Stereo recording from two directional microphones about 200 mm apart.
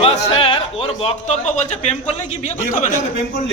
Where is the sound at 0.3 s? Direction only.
25° left (ahead or behind).